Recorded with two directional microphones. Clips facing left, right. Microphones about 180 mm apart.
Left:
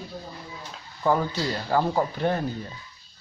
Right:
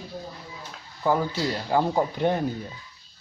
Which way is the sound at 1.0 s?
10° right (ahead or behind).